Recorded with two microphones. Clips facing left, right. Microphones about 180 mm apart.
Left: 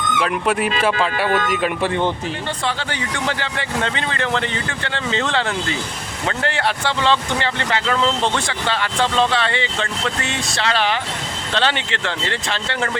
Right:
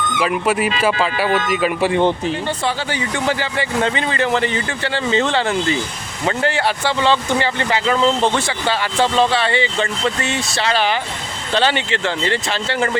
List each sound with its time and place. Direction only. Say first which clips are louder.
0.2 s speech: right 2 dB; 5° right (ahead or behind)
1.9 s speech: right 4 dB; 15° right (ahead or behind)
2.6 s speech: right 1 dB; 5° right (ahead or behind)